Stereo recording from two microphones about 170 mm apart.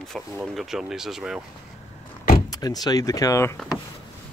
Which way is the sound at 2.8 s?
20° left (ahead or behind).